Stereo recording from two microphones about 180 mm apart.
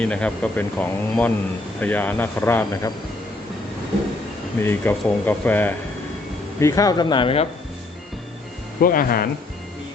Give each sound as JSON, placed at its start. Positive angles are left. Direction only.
{"t": 0.0, "sound": "speech", "side_deg": 5}
{"t": 4.6, "sound": "speech", "side_deg": 10}
{"t": 8.8, "sound": "speech", "side_deg": 55}